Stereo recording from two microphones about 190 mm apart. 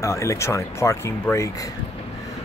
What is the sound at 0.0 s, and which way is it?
Speech, 15° left (ahead or behind).